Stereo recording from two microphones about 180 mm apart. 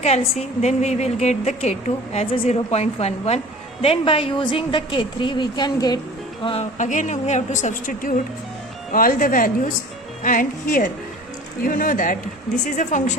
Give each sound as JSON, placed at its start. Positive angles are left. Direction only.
{"t": 0.0, "sound": "a woman's voice", "side_deg": 35}
{"t": 6.7, "sound": "a woman's voice", "side_deg": 45}